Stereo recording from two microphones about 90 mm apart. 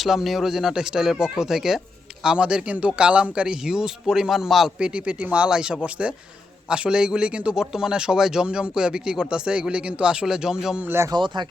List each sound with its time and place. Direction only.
0.0 s speech: centre (ahead or behind)
10.8 s speech: 30° right (ahead or behind)
11.1 s speech: 55° right (ahead or behind)